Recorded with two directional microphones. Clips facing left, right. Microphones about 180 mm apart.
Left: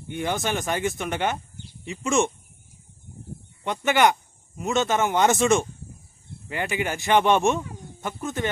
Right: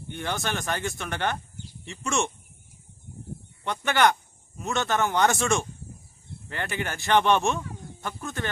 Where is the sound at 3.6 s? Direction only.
15° left (ahead or behind).